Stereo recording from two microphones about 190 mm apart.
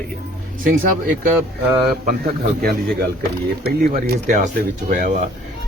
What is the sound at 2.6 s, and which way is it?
A man's voice, 55° right (ahead or behind).